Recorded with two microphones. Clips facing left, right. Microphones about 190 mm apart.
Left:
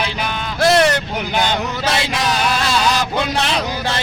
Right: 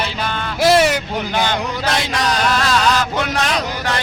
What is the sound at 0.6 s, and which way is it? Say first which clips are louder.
Speech: even; 5° right (ahead or behind).